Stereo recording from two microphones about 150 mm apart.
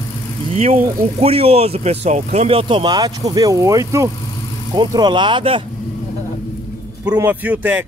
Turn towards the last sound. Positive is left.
turn(degrees=-10)  # may be behind; listen again after turning